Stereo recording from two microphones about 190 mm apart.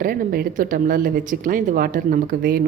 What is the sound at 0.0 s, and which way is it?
A woman's voice, 50° right (ahead or behind).